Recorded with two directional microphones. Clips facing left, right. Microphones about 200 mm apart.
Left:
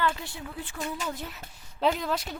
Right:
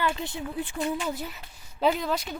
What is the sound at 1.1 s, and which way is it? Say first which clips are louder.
Speech: right 3 dB; 5° right (ahead or behind).